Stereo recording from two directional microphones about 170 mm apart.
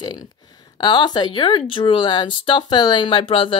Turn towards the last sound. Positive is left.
turn(degrees=30)  # may be behind; listen again after turning